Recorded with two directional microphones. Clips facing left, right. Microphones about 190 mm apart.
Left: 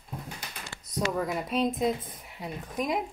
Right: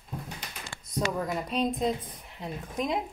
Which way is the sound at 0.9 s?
5° left (ahead or behind).